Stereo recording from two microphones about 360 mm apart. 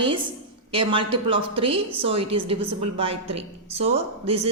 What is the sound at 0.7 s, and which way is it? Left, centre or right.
A woman's voice, centre.